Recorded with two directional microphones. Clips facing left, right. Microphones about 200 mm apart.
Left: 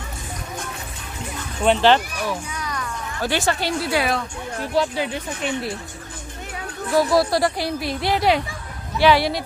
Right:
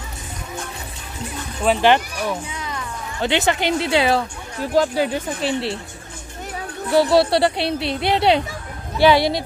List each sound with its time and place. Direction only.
1.8 s speech: 15° right (ahead or behind)
2.5 s speech: 25° right (ahead or behind)
4.7 s speech: 40° right (ahead or behind)
6.9 s a woman's voice: 30° right (ahead or behind)